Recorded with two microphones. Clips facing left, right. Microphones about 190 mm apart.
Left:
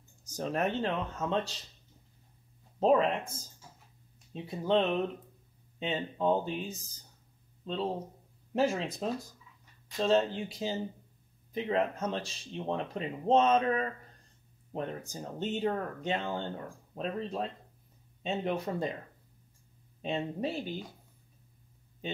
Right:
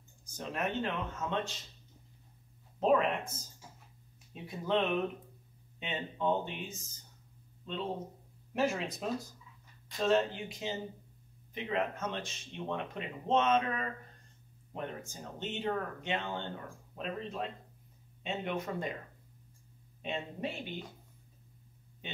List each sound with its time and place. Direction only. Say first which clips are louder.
0.4 s speech: left 4 dB; 40° left (ahead or behind)
2.8 s speech: left 3 dB; 30° left (ahead or behind)
10.0 s speech: left 2 dB; 30° left (ahead or behind)
20.0 s speech: left 5 dB; 35° left (ahead or behind)